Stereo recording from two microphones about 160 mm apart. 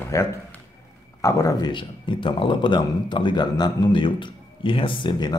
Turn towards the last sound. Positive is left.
turn(degrees=30)  # may be behind; listen again after turning